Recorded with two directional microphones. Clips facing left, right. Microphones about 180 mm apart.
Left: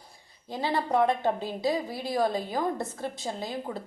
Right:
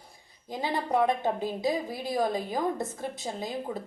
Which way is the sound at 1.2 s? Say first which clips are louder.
Left 1 dB; 15° right (ahead or behind).